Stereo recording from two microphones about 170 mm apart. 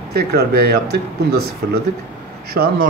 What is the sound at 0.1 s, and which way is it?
Speech, 65° right (ahead or behind).